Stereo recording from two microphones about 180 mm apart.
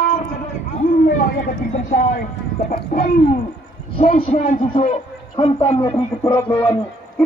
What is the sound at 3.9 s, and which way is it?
A man's voice, 30° left (ahead or behind).